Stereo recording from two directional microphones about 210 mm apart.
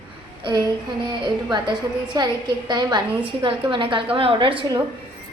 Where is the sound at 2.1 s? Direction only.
20° right (ahead or behind).